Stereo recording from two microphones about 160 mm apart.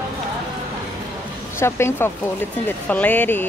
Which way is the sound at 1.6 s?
15° left (ahead or behind).